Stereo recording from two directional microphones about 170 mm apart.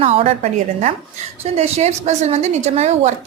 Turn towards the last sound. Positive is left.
turn(degrees=-40)  # may be behind; listen again after turning